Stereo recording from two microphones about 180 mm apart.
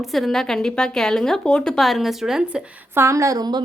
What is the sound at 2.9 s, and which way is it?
Speech, 15° right (ahead or behind).